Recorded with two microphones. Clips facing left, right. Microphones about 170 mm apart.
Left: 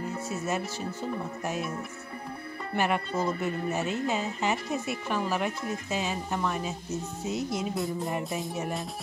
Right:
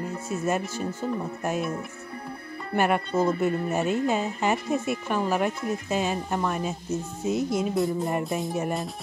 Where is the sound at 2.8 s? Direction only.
50° right (ahead or behind).